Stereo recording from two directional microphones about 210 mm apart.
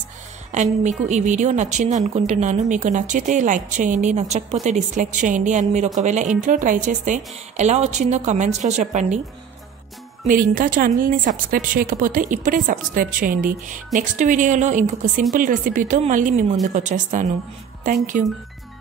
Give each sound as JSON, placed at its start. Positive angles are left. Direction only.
{"t": 0.5, "sound": "a woman's voice", "side_deg": -35}
{"t": 10.2, "sound": "a woman's voice", "side_deg": -40}